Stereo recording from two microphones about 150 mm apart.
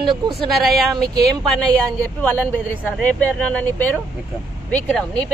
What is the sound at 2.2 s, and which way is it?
Speech, 10° left (ahead or behind).